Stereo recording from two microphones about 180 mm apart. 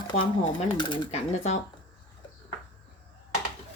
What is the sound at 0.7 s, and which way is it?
Speech, 25° left (ahead or behind).